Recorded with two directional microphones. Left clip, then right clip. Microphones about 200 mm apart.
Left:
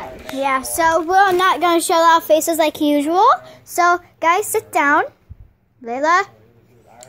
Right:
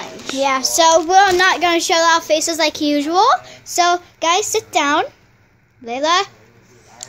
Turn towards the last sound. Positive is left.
turn(degrees=-40)  # may be behind; listen again after turning